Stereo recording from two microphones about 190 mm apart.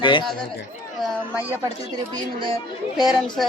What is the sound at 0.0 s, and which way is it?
Speech, 25° left (ahead or behind).